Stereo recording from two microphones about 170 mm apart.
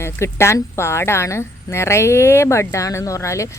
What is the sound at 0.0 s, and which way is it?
Speech, 15° left (ahead or behind).